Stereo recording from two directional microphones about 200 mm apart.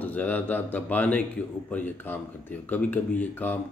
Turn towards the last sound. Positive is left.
turn(degrees=10)  # may be behind; listen again after turning